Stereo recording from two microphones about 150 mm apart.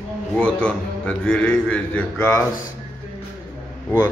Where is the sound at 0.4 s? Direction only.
10° left (ahead or behind).